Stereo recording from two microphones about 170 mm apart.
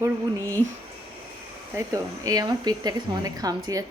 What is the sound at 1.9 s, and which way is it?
Speech, 20° right (ahead or behind).